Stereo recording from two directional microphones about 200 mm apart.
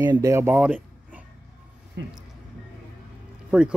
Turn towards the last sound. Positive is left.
turn(degrees=-5)  # may be behind; listen again after turning